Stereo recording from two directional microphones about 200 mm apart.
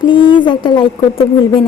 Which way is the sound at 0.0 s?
25° left (ahead or behind).